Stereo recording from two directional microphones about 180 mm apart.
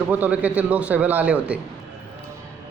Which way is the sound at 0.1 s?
10° right (ahead or behind).